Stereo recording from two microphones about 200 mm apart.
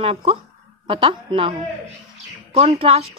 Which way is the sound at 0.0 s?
30° right (ahead or behind).